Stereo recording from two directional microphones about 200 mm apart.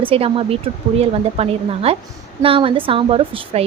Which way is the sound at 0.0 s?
25° right (ahead or behind).